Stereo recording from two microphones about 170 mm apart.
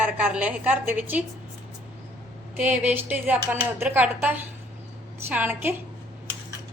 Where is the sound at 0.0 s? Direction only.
10° right (ahead or behind).